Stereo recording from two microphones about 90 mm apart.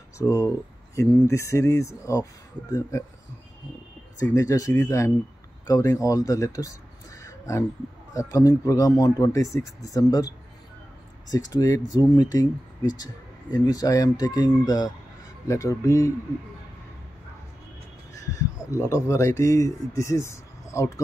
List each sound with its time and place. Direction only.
0.2 s speech: 40° left (ahead or behind)
4.2 s speech: 35° left (ahead or behind)
15.4 s speech: 35° left (ahead or behind)
18.2 s speech: 40° left (ahead or behind)